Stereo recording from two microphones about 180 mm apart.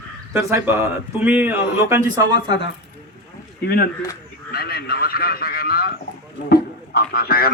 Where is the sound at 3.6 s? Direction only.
55° left (ahead or behind).